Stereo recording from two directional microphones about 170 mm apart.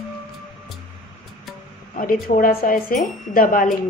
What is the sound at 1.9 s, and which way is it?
Speech, 50° left (ahead or behind).